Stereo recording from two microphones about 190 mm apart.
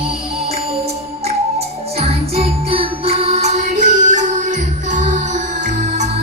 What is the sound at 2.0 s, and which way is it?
Music, 30° right (ahead or behind).